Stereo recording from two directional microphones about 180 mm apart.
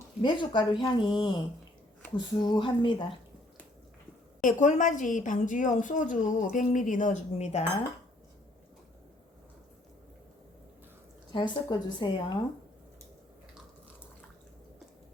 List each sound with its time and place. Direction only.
0.2 s speech: 25° left (ahead or behind)
4.4 s a woman's voice: 45° left (ahead or behind)
11.3 s speech: 25° left (ahead or behind)